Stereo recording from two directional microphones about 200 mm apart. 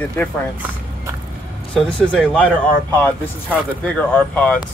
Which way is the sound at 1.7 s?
5° left (ahead or behind).